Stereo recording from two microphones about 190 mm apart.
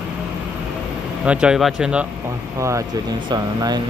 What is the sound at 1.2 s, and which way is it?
Speech, 5° right (ahead or behind).